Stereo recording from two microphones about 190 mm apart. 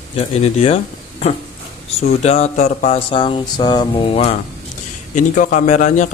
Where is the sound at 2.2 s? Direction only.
35° left (ahead or behind).